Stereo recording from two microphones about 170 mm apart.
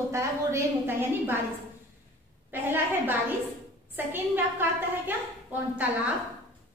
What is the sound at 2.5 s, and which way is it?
A woman's voice, 10° right (ahead or behind).